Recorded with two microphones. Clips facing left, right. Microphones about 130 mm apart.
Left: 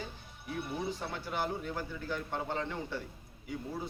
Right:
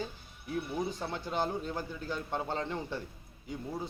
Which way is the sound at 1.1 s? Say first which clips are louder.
Right 5 dB; 25° right (ahead or behind).